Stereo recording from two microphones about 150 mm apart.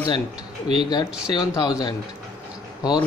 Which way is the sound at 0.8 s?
30° left (ahead or behind).